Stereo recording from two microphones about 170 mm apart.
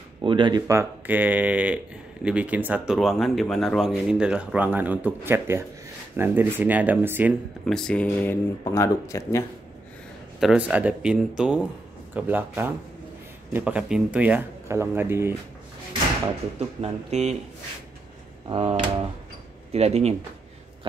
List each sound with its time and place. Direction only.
0.2 s speech: 30° right (ahead or behind); by 7.3 s 10° right (ahead or behind)
7.6 s speech: 5° left (ahead or behind)
10.4 s speech: 5° right (ahead or behind)
16.5 s speech: 40° right (ahead or behind)
18.5 s speech: 30° right (ahead or behind)